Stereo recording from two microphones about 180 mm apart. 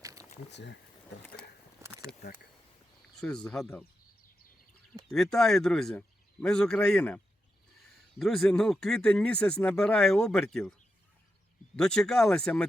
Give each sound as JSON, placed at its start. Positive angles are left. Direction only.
{"t": 0.0, "sound": "a sound", "side_deg": -20}
{"t": 0.5, "sound": "speech", "side_deg": 75}
{"t": 2.1, "sound": "speech", "side_deg": 5}
{"t": 5.1, "sound": "speech", "side_deg": 5}
{"t": 8.2, "sound": "speech", "side_deg": 0}
{"t": 11.8, "sound": "speech", "side_deg": 5}